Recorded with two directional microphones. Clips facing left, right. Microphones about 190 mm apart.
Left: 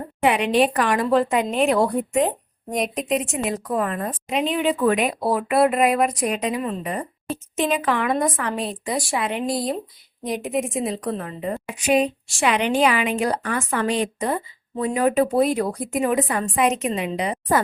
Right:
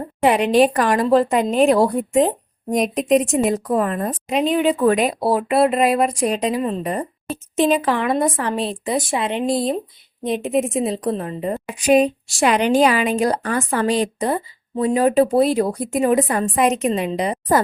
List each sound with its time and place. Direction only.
0.2 s a woman's voice: 40° right (ahead or behind)